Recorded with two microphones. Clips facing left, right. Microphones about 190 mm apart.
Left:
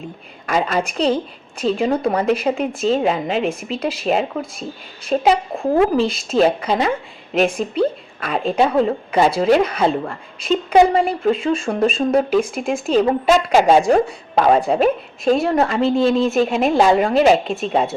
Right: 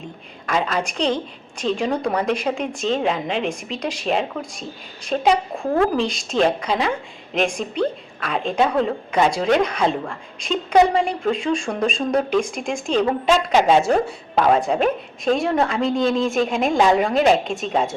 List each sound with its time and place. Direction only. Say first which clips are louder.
0.4 s a woman's voice: left 3 dB; 5° left (ahead or behind)
5.6 s speech: left 4 dB; 20° left (ahead or behind)
6.0 s a woman's voice: left 4 dB; 5° left (ahead or behind)